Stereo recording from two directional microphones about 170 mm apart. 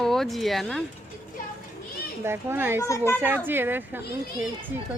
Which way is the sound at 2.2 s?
15° right (ahead or behind).